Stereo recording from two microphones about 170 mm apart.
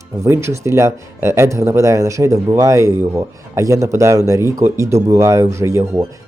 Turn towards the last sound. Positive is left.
turn(degrees=-15)  # may be behind; listen again after turning